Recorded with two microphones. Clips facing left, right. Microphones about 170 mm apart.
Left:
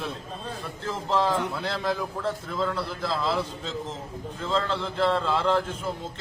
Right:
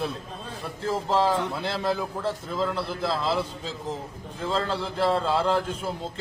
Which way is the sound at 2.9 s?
30° right (ahead or behind).